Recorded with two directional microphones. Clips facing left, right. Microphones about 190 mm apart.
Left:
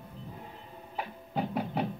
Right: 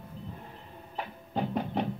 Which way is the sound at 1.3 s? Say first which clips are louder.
Right 1 dB; 10° left (ahead or behind).